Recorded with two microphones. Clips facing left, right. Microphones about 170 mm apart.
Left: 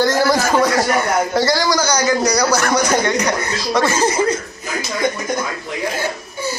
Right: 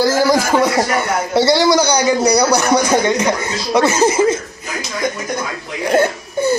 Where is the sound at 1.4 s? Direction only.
25° right (ahead or behind).